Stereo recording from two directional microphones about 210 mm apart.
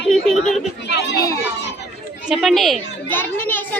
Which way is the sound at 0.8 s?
55° left (ahead or behind).